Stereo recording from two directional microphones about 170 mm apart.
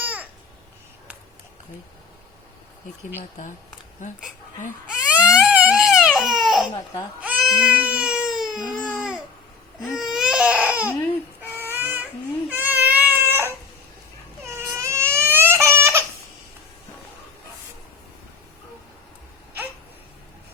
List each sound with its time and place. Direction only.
0.0 s babbling: 10° right (ahead or behind)
3.2 s speech: 50° left (ahead or behind)
5.0 s baby cry: 5° right (ahead or behind)
8.8 s babbling: 5° right (ahead or behind)
9.8 s baby cry: centre (ahead or behind)
12.5 s crying: 10° right (ahead or behind)
14.5 s baby cry: 15° right (ahead or behind)